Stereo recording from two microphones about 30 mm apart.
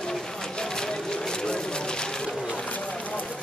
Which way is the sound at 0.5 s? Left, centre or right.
Left.